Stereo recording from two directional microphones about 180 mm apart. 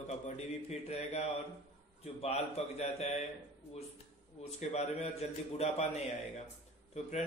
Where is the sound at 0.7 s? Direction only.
35° left (ahead or behind).